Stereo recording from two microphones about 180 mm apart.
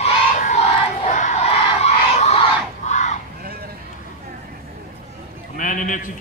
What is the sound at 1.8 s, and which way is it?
Crowd, 35° left (ahead or behind).